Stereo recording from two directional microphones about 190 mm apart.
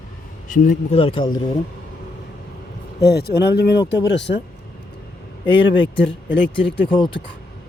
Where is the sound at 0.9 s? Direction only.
25° left (ahead or behind).